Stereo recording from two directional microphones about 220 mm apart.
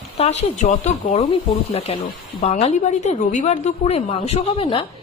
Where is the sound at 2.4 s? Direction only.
30° left (ahead or behind).